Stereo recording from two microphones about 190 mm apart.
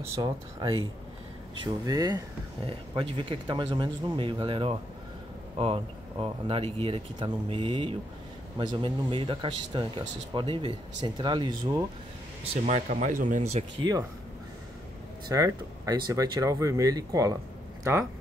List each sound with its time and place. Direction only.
0.1 s speech: 25° right (ahead or behind)
12.6 s speech: 40° right (ahead or behind)
15.2 s speech: 20° right (ahead or behind)